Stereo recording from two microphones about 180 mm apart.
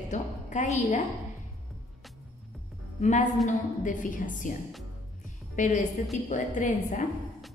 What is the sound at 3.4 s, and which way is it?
A woman's voice, 45° left (ahead or behind).